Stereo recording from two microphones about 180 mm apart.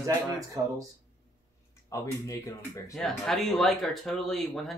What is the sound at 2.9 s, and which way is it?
Speech, centre (ahead or behind).